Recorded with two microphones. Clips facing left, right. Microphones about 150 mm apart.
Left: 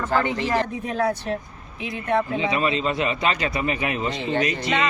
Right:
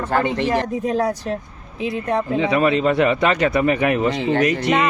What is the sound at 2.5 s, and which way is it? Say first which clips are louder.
A man's voice: right 6 dB; 60° right (ahead or behind).